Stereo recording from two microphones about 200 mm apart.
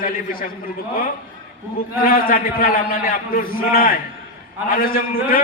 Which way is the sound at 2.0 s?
45° left (ahead or behind).